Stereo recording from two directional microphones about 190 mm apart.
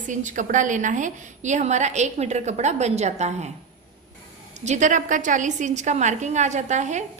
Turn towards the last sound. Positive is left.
turn(degrees=-40)  # may be behind; listen again after turning